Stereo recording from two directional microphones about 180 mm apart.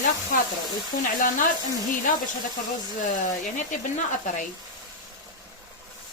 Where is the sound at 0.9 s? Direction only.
50° left (ahead or behind).